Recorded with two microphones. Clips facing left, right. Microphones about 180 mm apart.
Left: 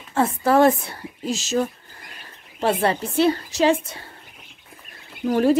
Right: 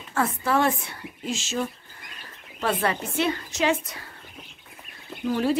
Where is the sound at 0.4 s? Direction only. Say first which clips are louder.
Left 9 dB; 40° left (ahead or behind).